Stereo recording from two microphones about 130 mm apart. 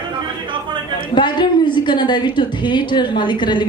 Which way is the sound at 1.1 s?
35° left (ahead or behind).